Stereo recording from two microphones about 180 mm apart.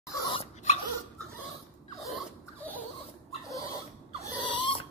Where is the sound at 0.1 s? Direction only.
20° left (ahead or behind).